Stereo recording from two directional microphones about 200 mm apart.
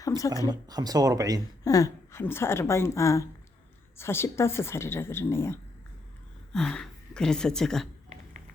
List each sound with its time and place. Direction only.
0.4 s speech: 20° right (ahead or behind)
1.6 s a woman's voice: 15° left (ahead or behind)